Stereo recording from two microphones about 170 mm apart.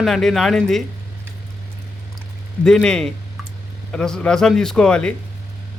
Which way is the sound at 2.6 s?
5° left (ahead or behind).